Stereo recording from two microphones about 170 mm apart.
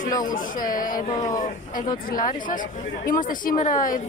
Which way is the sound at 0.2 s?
50° left (ahead or behind).